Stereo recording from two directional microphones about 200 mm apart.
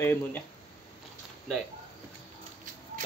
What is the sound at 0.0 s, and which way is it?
Speech, 10° left (ahead or behind).